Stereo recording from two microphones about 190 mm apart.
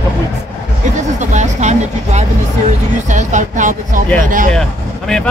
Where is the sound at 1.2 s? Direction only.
40° right (ahead or behind).